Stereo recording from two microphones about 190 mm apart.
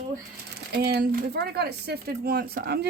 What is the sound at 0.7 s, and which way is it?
Speech, 55° right (ahead or behind).